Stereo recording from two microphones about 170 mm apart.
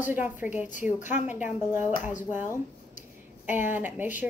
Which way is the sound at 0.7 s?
45° left (ahead or behind).